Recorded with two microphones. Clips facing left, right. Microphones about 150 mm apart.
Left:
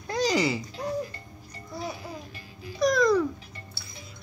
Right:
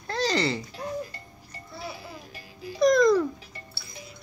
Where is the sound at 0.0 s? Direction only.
15° left (ahead or behind).